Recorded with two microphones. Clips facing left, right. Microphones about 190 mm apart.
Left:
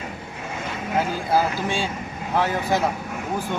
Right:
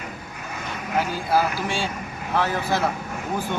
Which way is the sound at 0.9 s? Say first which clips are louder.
Left 1 dB; 20° left (ahead or behind).